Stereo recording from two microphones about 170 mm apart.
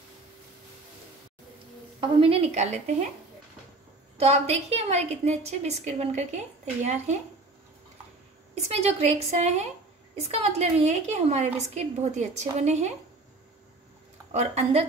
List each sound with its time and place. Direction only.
2.0 s a woman's voice: 30° right (ahead or behind)
4.2 s a woman's voice: 40° right (ahead or behind)
8.6 s a woman's voice: 40° right (ahead or behind)
14.3 s a woman's voice: 40° right (ahead or behind)